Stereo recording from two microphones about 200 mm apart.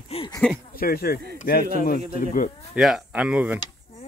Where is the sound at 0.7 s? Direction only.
50° left (ahead or behind).